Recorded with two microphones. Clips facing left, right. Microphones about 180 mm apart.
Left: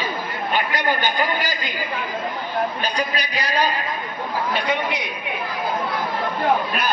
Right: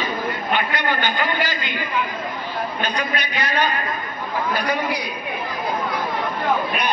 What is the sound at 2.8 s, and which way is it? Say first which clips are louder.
Speech: even; 35° left (ahead or behind).